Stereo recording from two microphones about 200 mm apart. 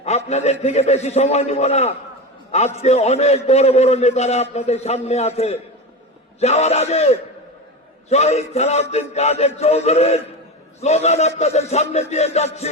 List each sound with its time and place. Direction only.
0.0 s a man's voice: 35° left (ahead or behind)